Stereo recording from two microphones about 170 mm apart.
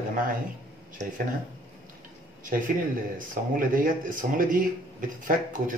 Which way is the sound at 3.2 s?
55° right (ahead or behind).